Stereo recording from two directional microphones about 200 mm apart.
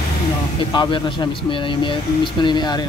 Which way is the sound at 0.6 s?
25° left (ahead or behind).